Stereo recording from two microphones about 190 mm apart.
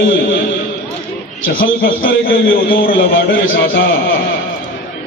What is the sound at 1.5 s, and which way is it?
A man's voice, 50° left (ahead or behind).